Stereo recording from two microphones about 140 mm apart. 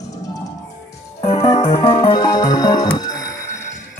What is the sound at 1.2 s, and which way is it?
Music, 45° left (ahead or behind).